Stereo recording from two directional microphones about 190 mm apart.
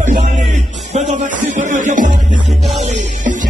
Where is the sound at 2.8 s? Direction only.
40° right (ahead or behind).